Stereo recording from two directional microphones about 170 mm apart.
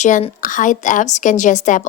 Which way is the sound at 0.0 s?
40° left (ahead or behind).